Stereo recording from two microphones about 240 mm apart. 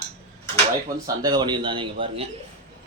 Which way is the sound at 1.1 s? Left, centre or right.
Centre.